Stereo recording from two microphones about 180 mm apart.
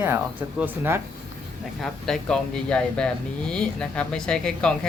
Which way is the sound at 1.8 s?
Centre (ahead or behind).